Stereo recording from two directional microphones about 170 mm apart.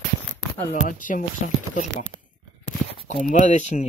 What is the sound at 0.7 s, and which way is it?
Speech, 50° left (ahead or behind).